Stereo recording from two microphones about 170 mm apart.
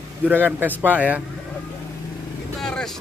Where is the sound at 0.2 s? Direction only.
10° right (ahead or behind).